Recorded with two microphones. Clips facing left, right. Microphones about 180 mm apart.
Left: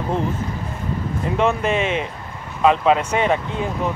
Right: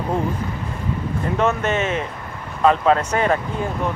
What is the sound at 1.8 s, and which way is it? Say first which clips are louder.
Speech: left 1 dB; 90° left.